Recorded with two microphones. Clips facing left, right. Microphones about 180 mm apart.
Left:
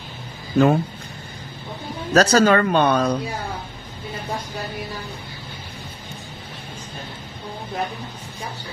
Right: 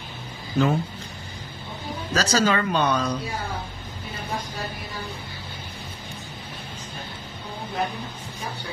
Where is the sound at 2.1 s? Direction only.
60° left (ahead or behind).